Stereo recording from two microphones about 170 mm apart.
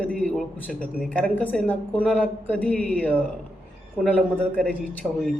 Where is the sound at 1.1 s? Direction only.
5° left (ahead or behind).